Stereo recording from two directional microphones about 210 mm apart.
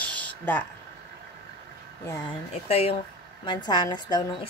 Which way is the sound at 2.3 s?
30° left (ahead or behind).